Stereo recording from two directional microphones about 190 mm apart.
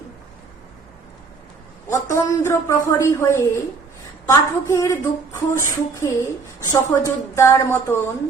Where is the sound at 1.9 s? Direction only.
15° left (ahead or behind).